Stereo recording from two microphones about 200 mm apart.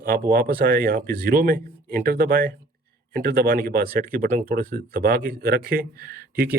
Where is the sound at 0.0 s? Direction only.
45° right (ahead or behind).